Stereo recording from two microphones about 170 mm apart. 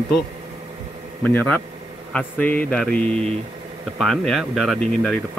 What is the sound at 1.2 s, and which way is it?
Speech, 10° left (ahead or behind).